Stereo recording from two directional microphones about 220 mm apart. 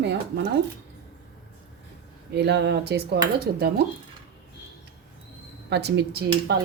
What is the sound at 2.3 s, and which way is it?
A woman's voice, 50° right (ahead or behind).